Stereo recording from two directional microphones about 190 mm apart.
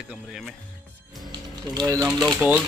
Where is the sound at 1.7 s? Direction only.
20° right (ahead or behind).